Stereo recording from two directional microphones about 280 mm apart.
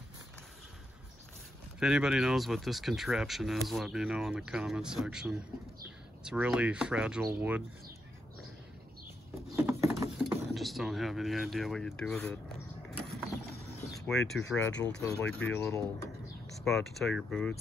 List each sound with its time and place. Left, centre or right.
1.8 s speech: centre
9.5 s a sound: centre
14.0 s speech: centre